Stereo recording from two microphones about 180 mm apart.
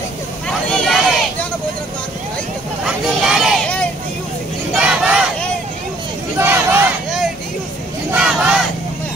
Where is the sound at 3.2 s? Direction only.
5° right (ahead or behind).